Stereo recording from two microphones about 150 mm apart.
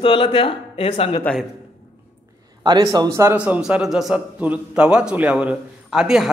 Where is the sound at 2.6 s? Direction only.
30° right (ahead or behind).